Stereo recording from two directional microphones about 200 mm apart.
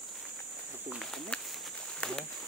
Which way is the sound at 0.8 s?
Centre (ahead or behind).